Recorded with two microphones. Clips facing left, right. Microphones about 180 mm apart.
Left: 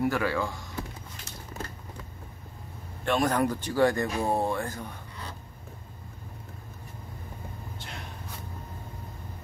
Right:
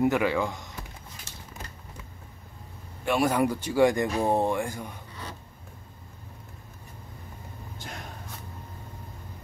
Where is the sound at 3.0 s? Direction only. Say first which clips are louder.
Right 1 dB; 10° right (ahead or behind).